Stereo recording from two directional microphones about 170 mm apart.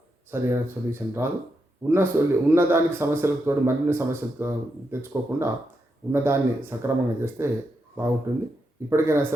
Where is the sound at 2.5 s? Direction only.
15° right (ahead or behind).